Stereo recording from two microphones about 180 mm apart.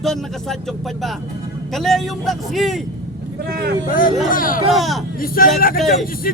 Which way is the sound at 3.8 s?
50° left (ahead or behind).